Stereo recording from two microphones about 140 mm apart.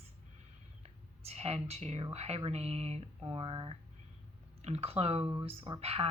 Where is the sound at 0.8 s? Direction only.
50° right (ahead or behind).